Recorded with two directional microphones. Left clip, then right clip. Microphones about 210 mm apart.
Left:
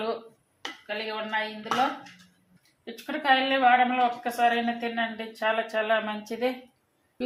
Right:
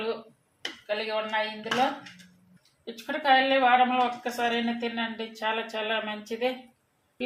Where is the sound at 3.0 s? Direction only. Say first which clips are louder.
Right 1 dB; 10° left (ahead or behind).